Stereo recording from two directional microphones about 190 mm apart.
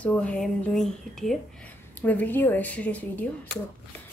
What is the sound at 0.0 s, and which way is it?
A woman's voice, 5° left (ahead or behind).